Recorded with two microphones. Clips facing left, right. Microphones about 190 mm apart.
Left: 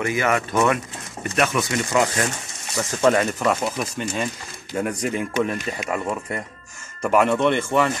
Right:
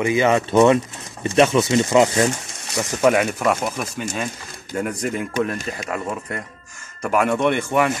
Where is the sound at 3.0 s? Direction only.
5° right (ahead or behind).